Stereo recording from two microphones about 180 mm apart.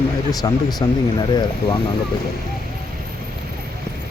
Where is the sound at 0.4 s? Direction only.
20° left (ahead or behind).